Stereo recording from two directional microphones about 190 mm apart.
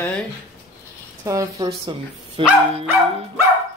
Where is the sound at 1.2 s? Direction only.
15° right (ahead or behind).